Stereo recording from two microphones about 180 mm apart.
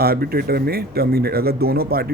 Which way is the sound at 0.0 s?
60° right (ahead or behind).